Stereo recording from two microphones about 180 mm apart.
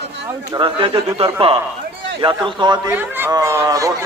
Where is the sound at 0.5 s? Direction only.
30° right (ahead or behind).